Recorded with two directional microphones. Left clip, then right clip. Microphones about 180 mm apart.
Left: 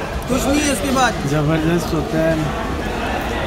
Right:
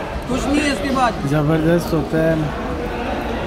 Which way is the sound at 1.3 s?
10° right (ahead or behind).